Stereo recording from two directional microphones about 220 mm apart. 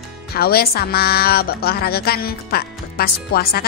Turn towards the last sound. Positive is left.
turn(degrees=45)  # may be behind; listen again after turning